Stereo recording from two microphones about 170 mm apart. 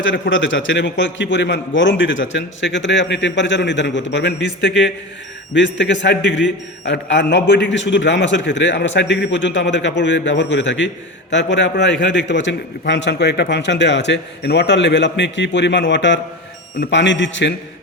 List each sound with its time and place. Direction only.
0.0 s a man's voice: 90° left